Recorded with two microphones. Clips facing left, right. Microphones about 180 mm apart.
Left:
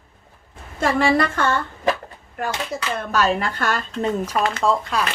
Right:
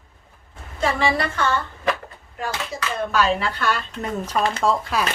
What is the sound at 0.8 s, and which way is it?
Speech, 45° left (ahead or behind).